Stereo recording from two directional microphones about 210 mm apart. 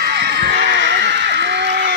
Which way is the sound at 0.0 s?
50° right (ahead or behind).